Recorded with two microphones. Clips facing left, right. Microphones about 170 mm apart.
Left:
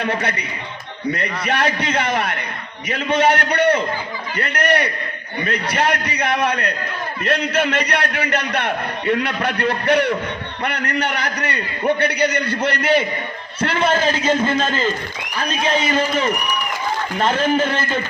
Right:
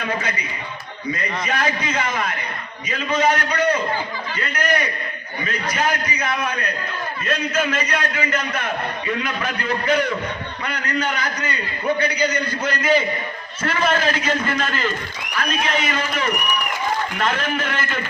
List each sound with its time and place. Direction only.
0.1 s a man's voice: 65° left (ahead or behind)
13.6 s a man's voice: 30° left (ahead or behind)